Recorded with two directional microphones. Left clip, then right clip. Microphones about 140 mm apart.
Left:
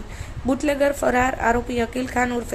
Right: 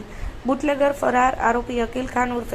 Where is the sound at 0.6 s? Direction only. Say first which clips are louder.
Even; 15° left (ahead or behind).